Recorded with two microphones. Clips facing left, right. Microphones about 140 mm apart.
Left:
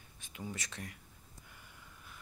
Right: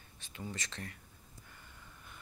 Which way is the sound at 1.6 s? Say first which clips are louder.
Right 1 dB; 5° left (ahead or behind).